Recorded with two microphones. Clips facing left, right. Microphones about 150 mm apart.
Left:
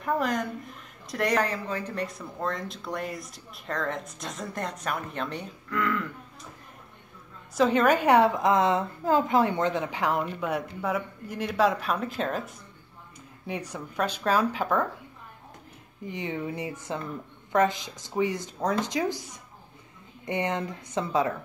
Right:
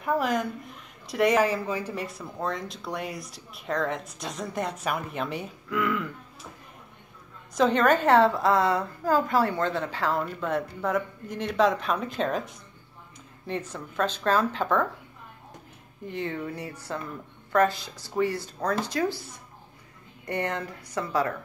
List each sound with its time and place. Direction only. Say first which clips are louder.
0.0 s speech: right 1 dB; centre (ahead or behind)
7.5 s a woman's voice: even; 5° left (ahead or behind)
16.1 s a woman's voice: even; 15° left (ahead or behind)